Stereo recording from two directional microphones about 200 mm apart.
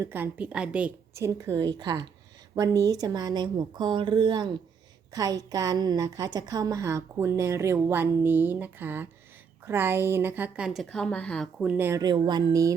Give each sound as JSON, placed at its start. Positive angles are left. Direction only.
{"t": 0.0, "sound": "a woman's voice", "side_deg": -10}